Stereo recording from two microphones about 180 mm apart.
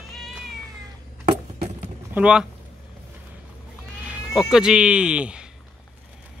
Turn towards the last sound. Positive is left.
turn(degrees=-5)  # may be behind; listen again after turning